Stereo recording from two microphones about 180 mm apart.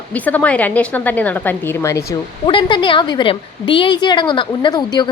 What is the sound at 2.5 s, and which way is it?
A woman's voice, 25° left (ahead or behind).